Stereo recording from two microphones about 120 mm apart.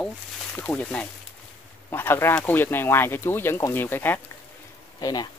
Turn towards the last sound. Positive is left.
turn(degrees=35)  # may be behind; listen again after turning